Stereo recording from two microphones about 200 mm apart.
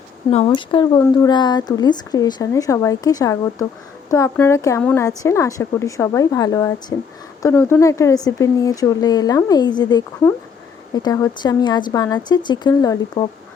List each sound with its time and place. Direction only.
0.3 s a woman's voice: 30° left (ahead or behind)